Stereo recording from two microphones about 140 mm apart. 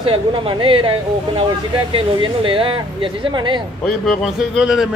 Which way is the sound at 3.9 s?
Centre (ahead or behind).